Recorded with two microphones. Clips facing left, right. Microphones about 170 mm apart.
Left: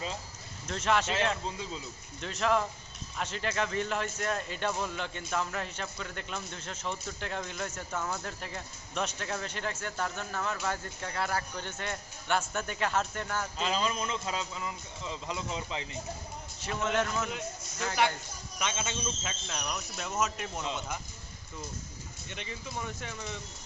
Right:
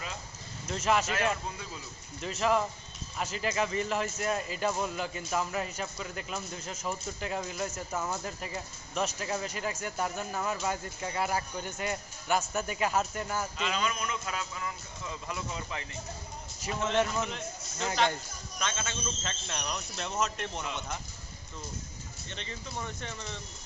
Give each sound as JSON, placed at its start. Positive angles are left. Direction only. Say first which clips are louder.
{"t": 0.7, "sound": "a man's voice", "louder": "right 1 dB", "side_deg": -5}
{"t": 1.5, "sound": "a man's voice", "louder": "left 3 dB", "side_deg": 20}
{"t": 2.2, "sound": "a man's voice", "louder": "right 1 dB", "side_deg": -5}
{"t": 13.6, "sound": "a man's voice", "louder": "left 4 dB", "side_deg": 30}
{"t": 16.6, "sound": "a man's voice", "louder": "right 2 dB", "side_deg": -10}
{"t": 18.6, "sound": "a man's voice", "louder": "left 1 dB", "side_deg": 15}
{"t": 22.3, "sound": "speech", "louder": "left 1 dB", "side_deg": 10}